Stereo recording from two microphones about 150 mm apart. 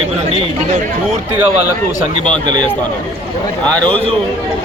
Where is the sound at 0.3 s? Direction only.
45° right (ahead or behind).